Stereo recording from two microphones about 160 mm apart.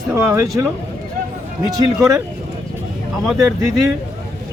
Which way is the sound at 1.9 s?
20° right (ahead or behind).